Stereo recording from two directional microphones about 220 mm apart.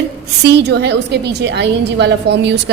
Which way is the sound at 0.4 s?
50° right (ahead or behind).